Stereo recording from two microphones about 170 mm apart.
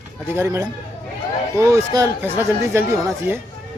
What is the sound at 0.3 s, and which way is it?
Speech, 15° right (ahead or behind).